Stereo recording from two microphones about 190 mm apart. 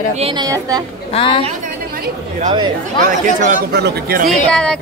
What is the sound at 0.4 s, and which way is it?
Speech, 20° right (ahead or behind).